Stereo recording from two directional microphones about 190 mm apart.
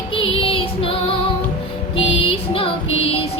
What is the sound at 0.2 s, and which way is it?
Music, 30° left (ahead or behind).